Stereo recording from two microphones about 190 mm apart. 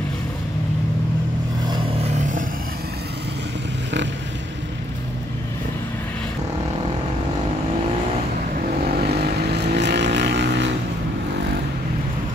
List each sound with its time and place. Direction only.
2.0 s vehicle: 40° right (ahead or behind)
9.0 s vehicle: 55° right (ahead or behind)